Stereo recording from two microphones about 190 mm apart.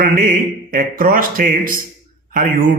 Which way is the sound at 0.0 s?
45° right (ahead or behind).